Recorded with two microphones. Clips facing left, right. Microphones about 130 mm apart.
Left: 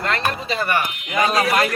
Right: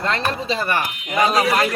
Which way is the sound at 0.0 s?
25° right (ahead or behind).